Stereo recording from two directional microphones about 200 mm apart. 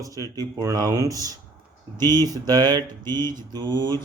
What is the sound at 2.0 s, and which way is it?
Mantra, 20° right (ahead or behind).